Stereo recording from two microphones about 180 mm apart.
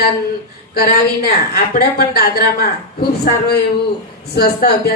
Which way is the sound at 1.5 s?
60° left (ahead or behind).